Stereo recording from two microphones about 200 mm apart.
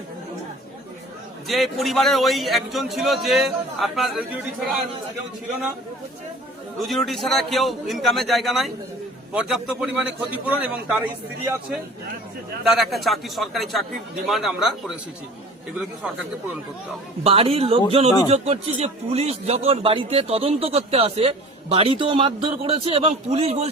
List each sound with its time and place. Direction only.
1.5 s a man's voice: centre (ahead or behind)
6.7 s a man's voice: centre (ahead or behind)
12.6 s a man's voice: centre (ahead or behind)
17.2 s speech: 30° right (ahead or behind)